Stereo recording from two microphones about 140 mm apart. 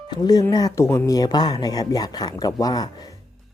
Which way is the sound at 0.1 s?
30° left (ahead or behind).